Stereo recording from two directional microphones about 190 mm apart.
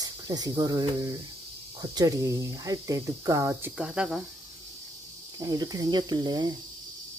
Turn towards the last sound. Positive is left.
turn(degrees=-20)  # may be behind; listen again after turning